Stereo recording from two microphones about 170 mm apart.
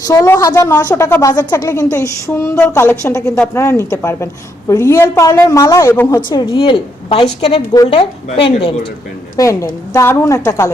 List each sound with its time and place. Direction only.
0.0 s a woman's voice: 20° left (ahead or behind)
9.4 s a woman's voice: 20° left (ahead or behind)